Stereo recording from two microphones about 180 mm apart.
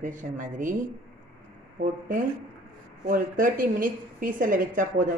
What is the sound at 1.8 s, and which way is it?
Speech, 55° right (ahead or behind).